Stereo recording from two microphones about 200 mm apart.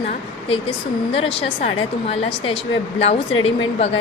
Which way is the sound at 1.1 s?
30° left (ahead or behind).